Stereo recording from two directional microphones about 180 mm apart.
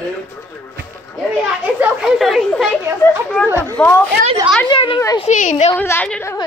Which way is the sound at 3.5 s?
15° right (ahead or behind).